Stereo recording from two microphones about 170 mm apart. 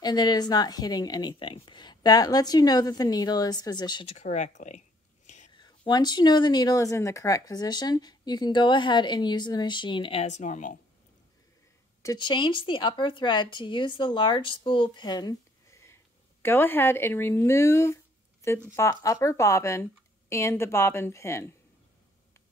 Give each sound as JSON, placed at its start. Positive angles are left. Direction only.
{"t": 0.0, "sound": "a woman's voice", "side_deg": 25}
{"t": 5.6, "sound": "a woman's voice", "side_deg": 25}
{"t": 10.2, "sound": "speech", "side_deg": 45}
{"t": 12.0, "sound": "a woman's voice", "side_deg": 25}